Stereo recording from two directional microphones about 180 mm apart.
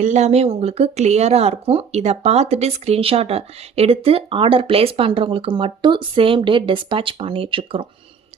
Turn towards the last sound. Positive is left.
turn(degrees=-30)  # may be behind; listen again after turning